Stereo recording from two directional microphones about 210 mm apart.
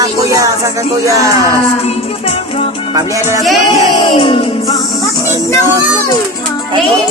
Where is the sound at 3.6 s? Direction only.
25° left (ahead or behind).